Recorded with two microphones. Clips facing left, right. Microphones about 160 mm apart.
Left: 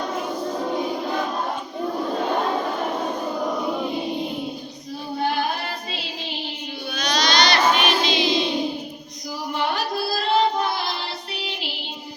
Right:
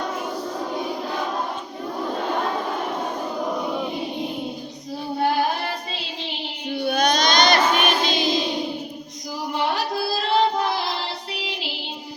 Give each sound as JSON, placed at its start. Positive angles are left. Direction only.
{"t": 6.8, "sound": "child singing", "side_deg": -55}